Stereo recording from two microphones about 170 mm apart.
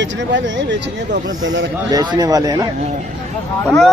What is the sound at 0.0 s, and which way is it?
Speech, 90° right.